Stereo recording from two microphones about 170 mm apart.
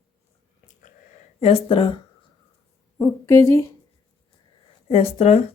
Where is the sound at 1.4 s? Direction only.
35° left (ahead or behind).